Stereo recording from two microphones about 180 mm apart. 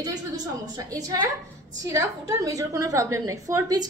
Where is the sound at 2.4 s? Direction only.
20° right (ahead or behind).